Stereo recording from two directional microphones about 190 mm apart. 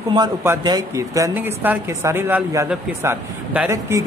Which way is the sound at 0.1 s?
15° right (ahead or behind).